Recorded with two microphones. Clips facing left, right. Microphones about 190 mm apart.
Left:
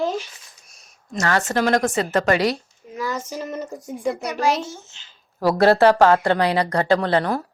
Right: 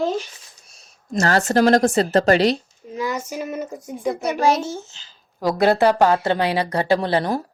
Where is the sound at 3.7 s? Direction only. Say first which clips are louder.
Left 2 dB; centre (ahead or behind).